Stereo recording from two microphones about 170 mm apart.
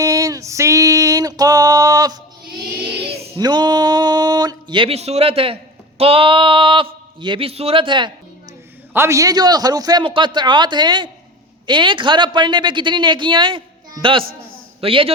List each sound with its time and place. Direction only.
0.0 s female singing: 20° right (ahead or behind)
3.3 s a sound: 25° right (ahead or behind)
6.0 s speech: 35° right (ahead or behind)
8.9 s a woman's voice: 15° right (ahead or behind); by 15.1 s 35° right (ahead or behind)